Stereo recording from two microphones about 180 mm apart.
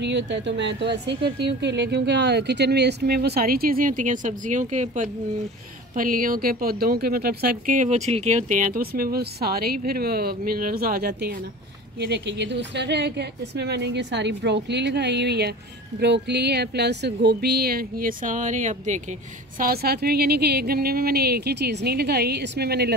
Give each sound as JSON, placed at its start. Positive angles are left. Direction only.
{"t": 0.0, "sound": "speech", "side_deg": -75}
{"t": 12.0, "sound": "speech", "side_deg": -75}
{"t": 19.6, "sound": "speech", "side_deg": -60}